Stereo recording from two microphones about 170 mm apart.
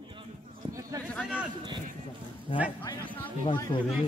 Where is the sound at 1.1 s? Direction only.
5° right (ahead or behind).